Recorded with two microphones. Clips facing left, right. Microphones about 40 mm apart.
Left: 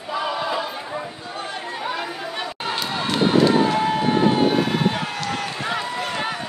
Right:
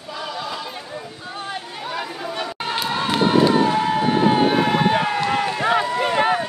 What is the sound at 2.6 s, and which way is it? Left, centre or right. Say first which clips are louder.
Run: right 2 dB; centre.